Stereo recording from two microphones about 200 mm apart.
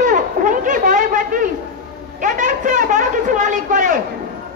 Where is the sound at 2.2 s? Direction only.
40° right (ahead or behind).